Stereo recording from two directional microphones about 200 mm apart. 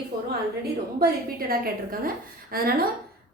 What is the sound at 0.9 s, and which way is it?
A woman's voice, 50° right (ahead or behind).